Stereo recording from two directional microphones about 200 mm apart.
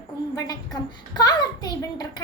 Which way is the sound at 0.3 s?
20° left (ahead or behind).